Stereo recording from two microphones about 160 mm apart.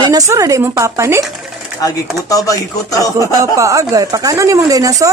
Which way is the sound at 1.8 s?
20° left (ahead or behind).